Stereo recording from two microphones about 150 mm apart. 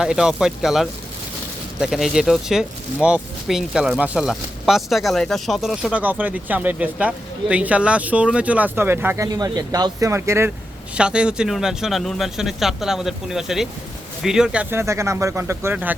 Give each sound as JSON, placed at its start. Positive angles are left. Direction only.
{"t": 0.0, "sound": "speech", "side_deg": -5}